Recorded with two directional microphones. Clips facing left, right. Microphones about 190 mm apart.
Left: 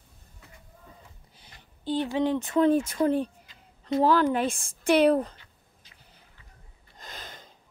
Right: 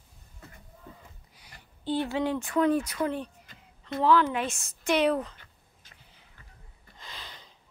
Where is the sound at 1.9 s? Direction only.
15° left (ahead or behind); by 5.4 s 35° left (ahead or behind).